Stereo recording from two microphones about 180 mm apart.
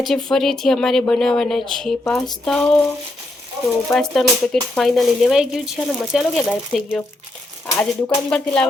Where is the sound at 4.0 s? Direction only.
Centre (ahead or behind).